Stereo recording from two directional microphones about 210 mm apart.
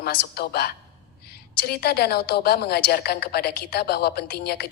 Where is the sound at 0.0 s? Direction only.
45° left (ahead or behind).